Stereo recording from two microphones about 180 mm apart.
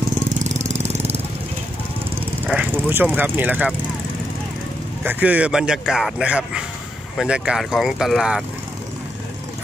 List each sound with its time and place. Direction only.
0.4 s jackhammer: 40° right (ahead or behind)
2.4 s speech: 10° right (ahead or behind)
5.0 s speech: 10° right (ahead or behind)